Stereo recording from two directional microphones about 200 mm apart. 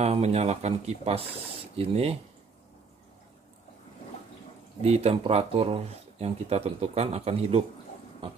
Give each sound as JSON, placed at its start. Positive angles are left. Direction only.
{"t": 0.0, "sound": "speech", "side_deg": -30}
{"t": 4.8, "sound": "speech", "side_deg": -30}